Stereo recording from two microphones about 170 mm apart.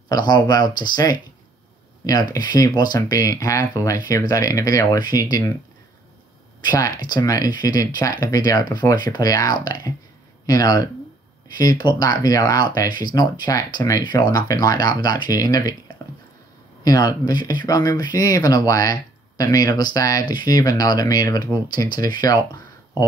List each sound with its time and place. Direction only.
0.1 s speech: 25° left (ahead or behind)
6.6 s speech: 25° left (ahead or behind)
16.8 s speech: 20° left (ahead or behind)